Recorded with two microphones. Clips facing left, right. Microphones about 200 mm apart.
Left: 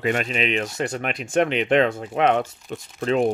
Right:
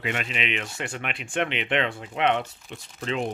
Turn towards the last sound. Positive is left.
turn(degrees=45)  # may be behind; listen again after turning